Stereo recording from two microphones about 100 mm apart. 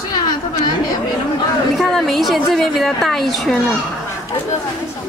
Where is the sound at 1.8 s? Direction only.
Centre (ahead or behind).